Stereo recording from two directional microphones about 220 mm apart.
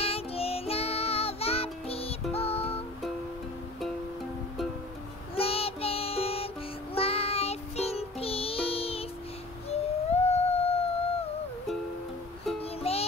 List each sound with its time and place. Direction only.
0.0 s music: 25° left (ahead or behind)
5.3 s music: 25° left (ahead or behind)
9.7 s a sound: 30° left (ahead or behind)
12.9 s music: 25° left (ahead or behind)